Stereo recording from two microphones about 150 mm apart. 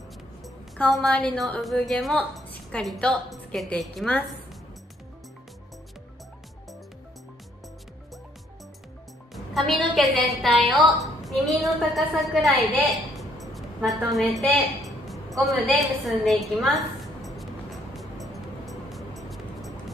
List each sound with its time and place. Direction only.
0.4 s a woman's voice: centre (ahead or behind)
9.3 s a woman's voice: centre (ahead or behind)
11.2 s a sound: centre (ahead or behind)